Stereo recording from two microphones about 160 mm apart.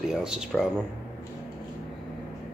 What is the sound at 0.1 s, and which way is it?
Speech, 5° right (ahead or behind).